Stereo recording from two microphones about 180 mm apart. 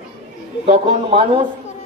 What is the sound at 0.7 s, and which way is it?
Speech, 30° right (ahead or behind).